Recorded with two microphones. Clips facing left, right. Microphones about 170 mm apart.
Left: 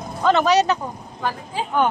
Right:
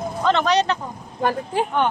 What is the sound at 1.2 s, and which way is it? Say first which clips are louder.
Speech: right 5 dB; 55° right (ahead or behind).